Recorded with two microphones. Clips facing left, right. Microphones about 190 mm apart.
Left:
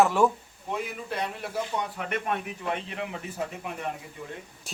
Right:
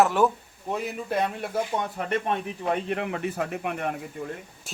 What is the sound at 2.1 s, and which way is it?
Speech, 30° right (ahead or behind).